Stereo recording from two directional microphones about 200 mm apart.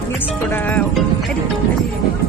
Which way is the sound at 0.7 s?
5° left (ahead or behind).